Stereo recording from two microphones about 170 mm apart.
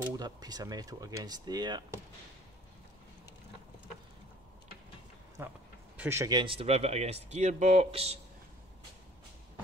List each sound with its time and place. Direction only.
0.2 s speech: 25° right (ahead or behind)
5.4 s speech: 15° right (ahead or behind); by 8.2 s 35° right (ahead or behind)